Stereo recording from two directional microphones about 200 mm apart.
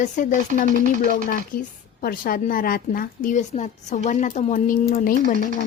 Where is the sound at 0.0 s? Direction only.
40° left (ahead or behind).